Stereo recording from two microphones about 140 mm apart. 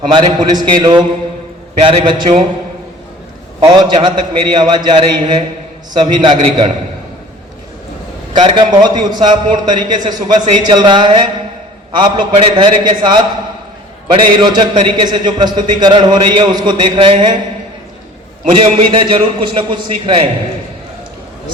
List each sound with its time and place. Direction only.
0.0 s a man's voice: 35° right (ahead or behind)
3.6 s a man's voice: 30° right (ahead or behind)
8.3 s a man's voice: 35° right (ahead or behind)
18.6 s a man's voice: 35° right (ahead or behind)